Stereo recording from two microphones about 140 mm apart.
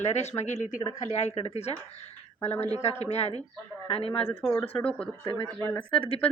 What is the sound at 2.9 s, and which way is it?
Speech, 50° left (ahead or behind).